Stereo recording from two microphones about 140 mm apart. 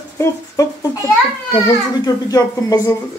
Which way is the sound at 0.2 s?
20° left (ahead or behind).